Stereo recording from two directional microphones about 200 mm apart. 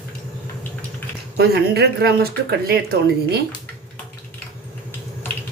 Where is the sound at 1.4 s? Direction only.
55° right (ahead or behind).